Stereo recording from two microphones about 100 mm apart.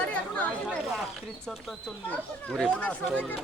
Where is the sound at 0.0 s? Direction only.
15° left (ahead or behind).